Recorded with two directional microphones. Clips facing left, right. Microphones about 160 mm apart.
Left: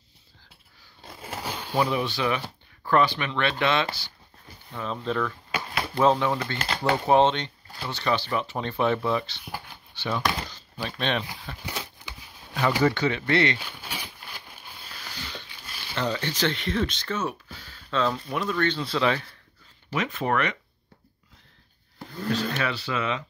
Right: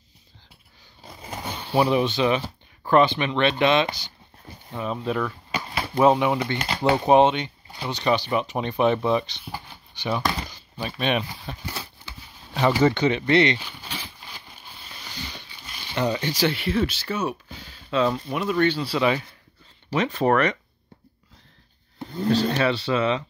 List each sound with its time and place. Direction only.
1.0 s a sound: 5° left (ahead or behind)
1.7 s speech: 15° right (ahead or behind)
11.6 s a sound: 15° left (ahead or behind)
12.5 s speech: 20° right (ahead or behind)
13.6 s a sound: 10° left (ahead or behind)
15.9 s speech: 15° right (ahead or behind)
18.1 s speech: 5° right (ahead or behind)
19.9 s speech: 35° right (ahead or behind)
21.9 s speech: 25° right (ahead or behind)